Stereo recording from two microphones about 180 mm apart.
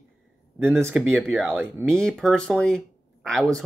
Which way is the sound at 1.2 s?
Centre (ahead or behind).